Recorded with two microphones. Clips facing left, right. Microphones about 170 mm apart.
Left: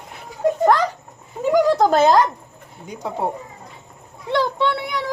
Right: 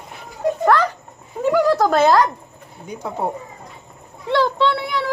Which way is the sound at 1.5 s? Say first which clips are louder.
Left 1 dB; 20° left (ahead or behind).